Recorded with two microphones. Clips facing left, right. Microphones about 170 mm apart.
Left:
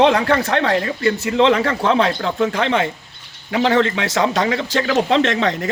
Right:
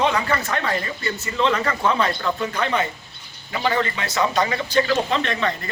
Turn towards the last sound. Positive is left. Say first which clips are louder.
# left 6 dB
turn(degrees=90)